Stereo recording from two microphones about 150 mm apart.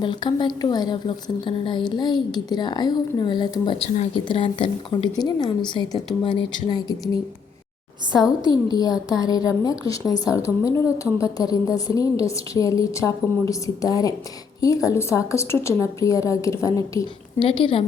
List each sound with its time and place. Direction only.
0.0 s a woman's voice: 30° left (ahead or behind)
8.6 s a woman's voice: 25° left (ahead or behind)
17.4 s a woman's voice: 35° left (ahead or behind)